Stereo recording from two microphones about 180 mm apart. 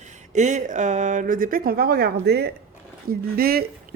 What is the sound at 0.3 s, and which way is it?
Speech, 40° right (ahead or behind).